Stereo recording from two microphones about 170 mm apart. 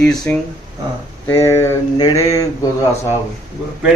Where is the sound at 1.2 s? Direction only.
15° left (ahead or behind).